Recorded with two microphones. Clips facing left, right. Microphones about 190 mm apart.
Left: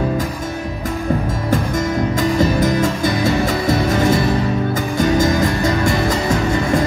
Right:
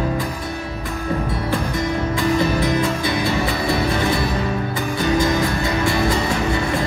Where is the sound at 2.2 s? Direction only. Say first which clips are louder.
Left 2 dB; 45° left (ahead or behind).